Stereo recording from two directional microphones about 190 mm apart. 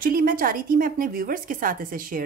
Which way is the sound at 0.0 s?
50° right (ahead or behind).